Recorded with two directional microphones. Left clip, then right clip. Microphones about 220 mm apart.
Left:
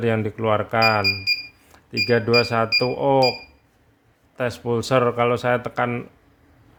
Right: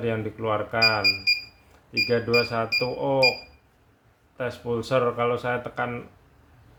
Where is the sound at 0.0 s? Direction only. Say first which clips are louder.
Left 5 dB; 50° left (ahead or behind).